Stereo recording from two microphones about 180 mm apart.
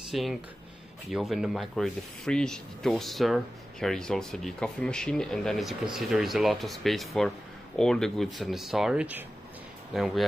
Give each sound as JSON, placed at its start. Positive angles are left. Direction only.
{"t": 0.1, "sound": "speech", "side_deg": 0}